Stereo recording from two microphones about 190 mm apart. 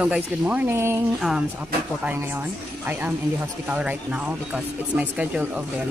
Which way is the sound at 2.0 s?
10° right (ahead or behind).